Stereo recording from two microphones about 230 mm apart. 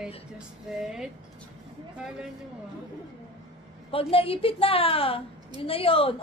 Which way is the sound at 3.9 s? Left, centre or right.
Left.